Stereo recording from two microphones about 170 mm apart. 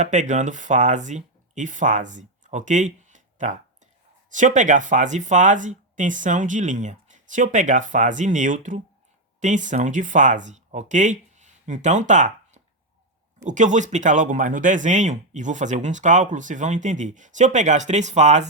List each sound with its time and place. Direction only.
0.0 s speech: 45° right (ahead or behind)